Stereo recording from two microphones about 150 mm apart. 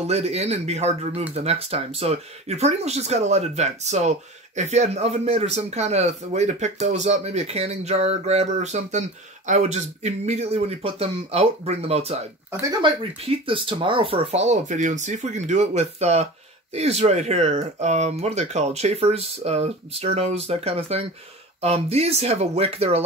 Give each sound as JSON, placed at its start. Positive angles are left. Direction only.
{"t": 0.0, "sound": "speech", "side_deg": -45}